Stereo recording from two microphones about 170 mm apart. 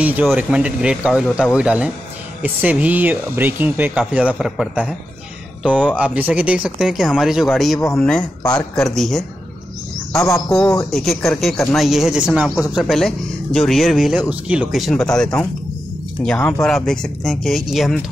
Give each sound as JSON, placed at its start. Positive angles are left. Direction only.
{"t": 0.0, "sound": "speech", "side_deg": -5}
{"t": 5.9, "sound": "speech", "side_deg": -10}
{"t": 8.2, "sound": "speech", "side_deg": 25}
{"t": 8.5, "sound": "speech", "side_deg": 5}
{"t": 10.1, "sound": "cricket", "side_deg": 15}
{"t": 10.9, "sound": "speech", "side_deg": 0}